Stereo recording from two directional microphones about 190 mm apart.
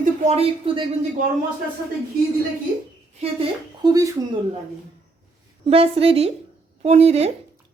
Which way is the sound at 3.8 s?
20° right (ahead or behind).